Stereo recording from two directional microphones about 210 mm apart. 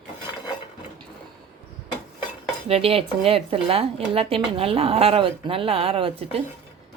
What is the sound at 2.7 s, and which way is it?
A woman's voice, 25° right (ahead or behind).